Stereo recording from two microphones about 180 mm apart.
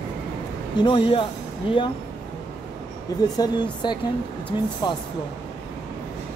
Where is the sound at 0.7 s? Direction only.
30° left (ahead or behind).